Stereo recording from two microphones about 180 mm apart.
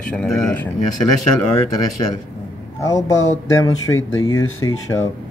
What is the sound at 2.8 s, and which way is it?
Speech, 15° left (ahead or behind).